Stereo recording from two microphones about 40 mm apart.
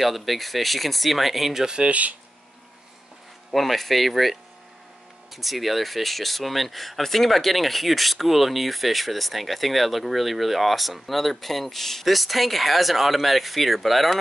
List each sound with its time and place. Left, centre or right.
0.0 s speech: centre
1.8 s speech: right
3.5 s speech: centre